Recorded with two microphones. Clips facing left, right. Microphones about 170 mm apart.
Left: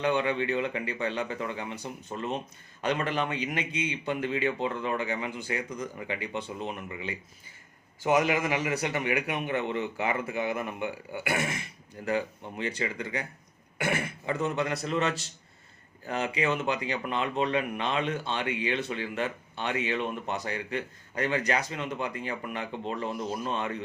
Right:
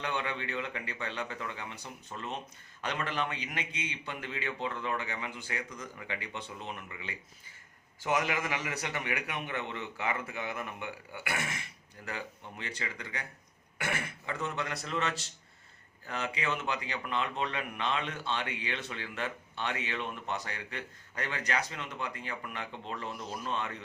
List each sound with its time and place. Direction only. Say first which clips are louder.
0.0 s speech: left 9 dB; 15° left (ahead or behind)